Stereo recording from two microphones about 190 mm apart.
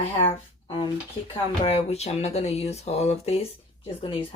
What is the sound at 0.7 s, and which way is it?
Speech, 25° left (ahead or behind).